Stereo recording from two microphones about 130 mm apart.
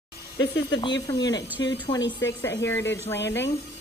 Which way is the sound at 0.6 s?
30° left (ahead or behind).